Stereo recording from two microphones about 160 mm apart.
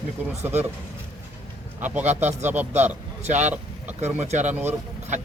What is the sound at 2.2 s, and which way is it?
Speech, 45° right (ahead or behind).